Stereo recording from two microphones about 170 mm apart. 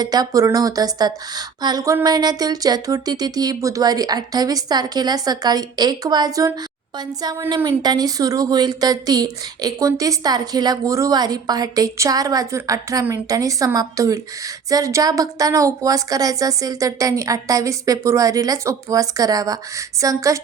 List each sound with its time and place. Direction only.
0.0 s speech: 25° right (ahead or behind)